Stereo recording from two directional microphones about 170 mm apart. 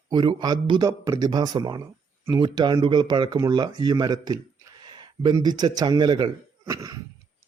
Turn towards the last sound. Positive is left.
turn(degrees=-20)  # may be behind; listen again after turning